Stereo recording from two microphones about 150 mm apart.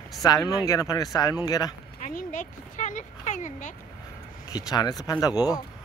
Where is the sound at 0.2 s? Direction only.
25° left (ahead or behind).